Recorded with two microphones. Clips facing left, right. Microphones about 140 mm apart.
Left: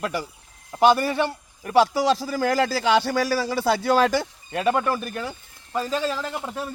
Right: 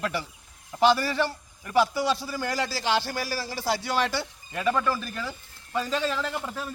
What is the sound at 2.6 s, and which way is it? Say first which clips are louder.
Speech: left 6 dB; 65° left (ahead or behind).